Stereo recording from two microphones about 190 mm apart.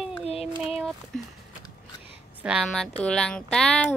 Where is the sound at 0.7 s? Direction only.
Centre (ahead or behind).